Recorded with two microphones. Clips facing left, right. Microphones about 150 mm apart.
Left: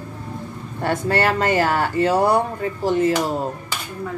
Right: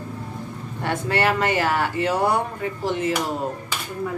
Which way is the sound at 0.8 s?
40° left (ahead or behind).